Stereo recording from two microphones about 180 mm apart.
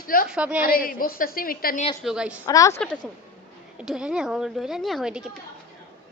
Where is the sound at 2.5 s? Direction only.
20° left (ahead or behind).